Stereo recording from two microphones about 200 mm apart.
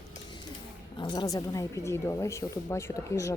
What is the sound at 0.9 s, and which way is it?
Speech, 20° left (ahead or behind).